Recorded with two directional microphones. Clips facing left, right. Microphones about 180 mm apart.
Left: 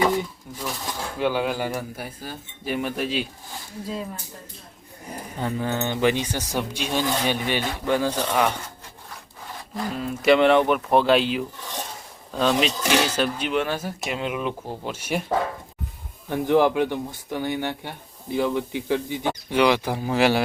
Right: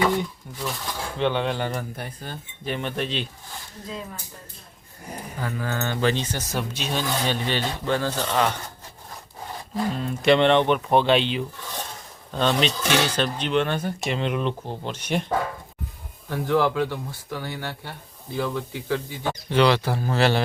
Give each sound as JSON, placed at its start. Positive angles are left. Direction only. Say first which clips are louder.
{"t": 0.0, "sound": "speech", "louder": "left 1 dB", "side_deg": 5}
{"t": 5.4, "sound": "speech", "louder": "left 3 dB", "side_deg": 20}
{"t": 9.9, "sound": "speech", "louder": "left 1 dB", "side_deg": 5}
{"t": 11.6, "sound": "speech", "louder": "left 1 dB", "side_deg": 15}
{"t": 12.3, "sound": "speech", "louder": "left 1 dB", "side_deg": 5}
{"t": 16.3, "sound": "speech", "louder": "left 3 dB", "side_deg": 20}